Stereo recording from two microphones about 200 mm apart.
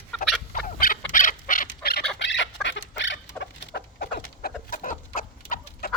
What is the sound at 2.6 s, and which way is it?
Bird, 65° left (ahead or behind).